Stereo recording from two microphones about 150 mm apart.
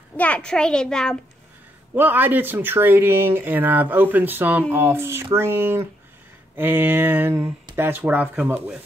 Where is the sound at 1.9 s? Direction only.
10° right (ahead or behind).